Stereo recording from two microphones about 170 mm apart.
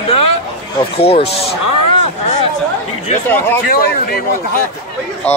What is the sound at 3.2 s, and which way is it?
Speech, 10° left (ahead or behind).